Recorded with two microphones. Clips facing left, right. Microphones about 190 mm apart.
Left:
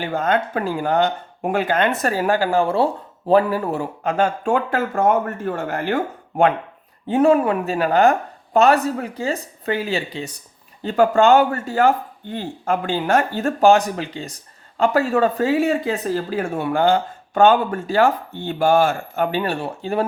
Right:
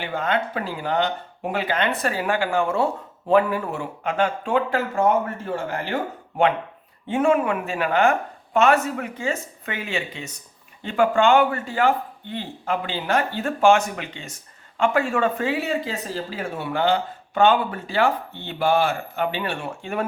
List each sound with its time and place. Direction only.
0.0 s speech: 45° left (ahead or behind)
7.1 s speech: 35° left (ahead or behind)